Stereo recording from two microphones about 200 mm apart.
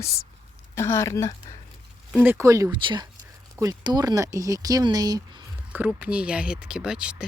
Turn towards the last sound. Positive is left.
turn(degrees=-5)  # may be behind; listen again after turning